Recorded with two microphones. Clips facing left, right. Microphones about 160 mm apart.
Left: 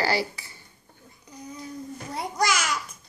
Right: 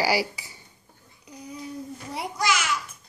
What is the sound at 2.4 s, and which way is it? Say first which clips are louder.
Speech: left 1 dB; 40° left (ahead or behind).